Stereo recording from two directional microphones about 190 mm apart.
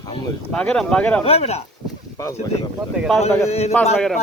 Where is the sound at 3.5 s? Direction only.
35° left (ahead or behind).